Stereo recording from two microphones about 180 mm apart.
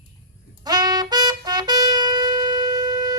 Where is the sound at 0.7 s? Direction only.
20° right (ahead or behind).